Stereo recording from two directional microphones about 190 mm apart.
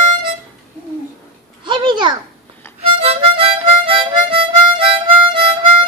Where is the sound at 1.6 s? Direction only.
25° right (ahead or behind).